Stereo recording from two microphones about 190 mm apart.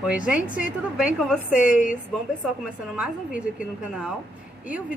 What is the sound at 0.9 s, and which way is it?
Speech, 5° right (ahead or behind).